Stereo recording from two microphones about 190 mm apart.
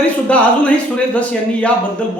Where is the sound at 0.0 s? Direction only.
5° left (ahead or behind).